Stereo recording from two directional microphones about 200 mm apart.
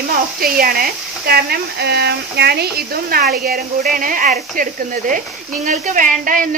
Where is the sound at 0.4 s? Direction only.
45° right (ahead or behind).